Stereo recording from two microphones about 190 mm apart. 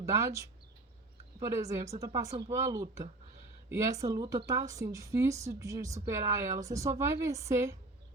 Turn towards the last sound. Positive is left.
turn(degrees=-15)  # may be behind; listen again after turning